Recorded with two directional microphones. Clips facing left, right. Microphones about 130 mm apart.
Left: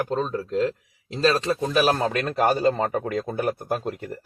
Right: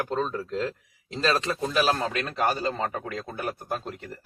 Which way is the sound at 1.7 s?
35° left (ahead or behind).